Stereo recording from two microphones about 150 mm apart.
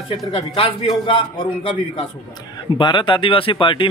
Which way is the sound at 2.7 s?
30° left (ahead or behind).